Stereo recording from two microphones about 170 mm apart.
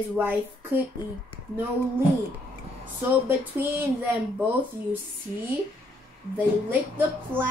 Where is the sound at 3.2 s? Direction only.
10° right (ahead or behind).